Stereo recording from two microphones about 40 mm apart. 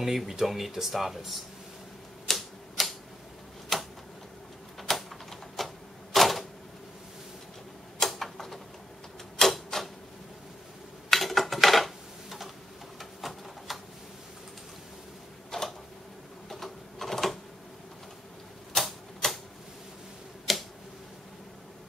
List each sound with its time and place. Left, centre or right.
0.0 s speech: centre
2.2 s typewriter: centre
3.7 s a sound: centre
4.7 s typewriter: centre
8.0 s typewriter: centre
11.1 s typing: centre
13.2 s a sound: centre
15.5 s a sound: centre
16.4 s printer: centre
18.8 s typewriter: centre
20.5 s tick-tock: centre